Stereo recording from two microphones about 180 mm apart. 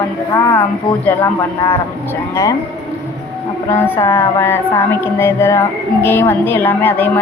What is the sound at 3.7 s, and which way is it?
A woman's voice, 15° left (ahead or behind).